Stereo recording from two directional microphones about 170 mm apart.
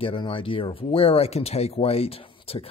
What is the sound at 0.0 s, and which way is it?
Speech, 30° left (ahead or behind).